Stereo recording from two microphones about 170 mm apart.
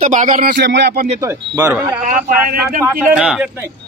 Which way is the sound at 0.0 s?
50° right (ahead or behind).